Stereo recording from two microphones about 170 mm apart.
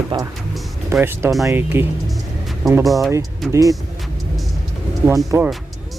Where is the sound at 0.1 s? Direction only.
30° right (ahead or behind).